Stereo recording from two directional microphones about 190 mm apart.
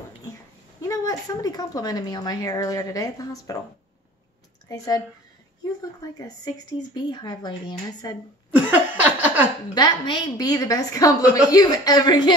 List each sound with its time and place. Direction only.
0.7 s a woman's voice: 15° left (ahead or behind)
4.6 s a woman's voice: 20° left (ahead or behind)
8.5 s a sound: 10° right (ahead or behind)
9.8 s a woman's voice: 20° left (ahead or behind)